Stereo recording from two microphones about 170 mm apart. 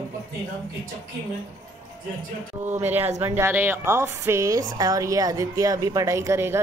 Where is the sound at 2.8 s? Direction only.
10° right (ahead or behind).